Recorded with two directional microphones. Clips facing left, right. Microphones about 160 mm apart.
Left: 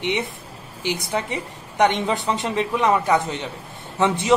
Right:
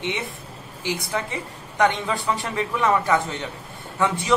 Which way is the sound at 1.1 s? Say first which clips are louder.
Left 2 dB; 20° left (ahead or behind).